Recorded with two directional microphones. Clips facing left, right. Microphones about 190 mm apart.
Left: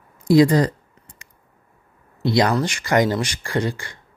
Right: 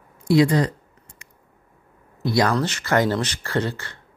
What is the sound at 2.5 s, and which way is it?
Speech, 10° left (ahead or behind).